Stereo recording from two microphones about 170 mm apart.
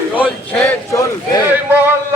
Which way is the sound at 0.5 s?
15° left (ahead or behind).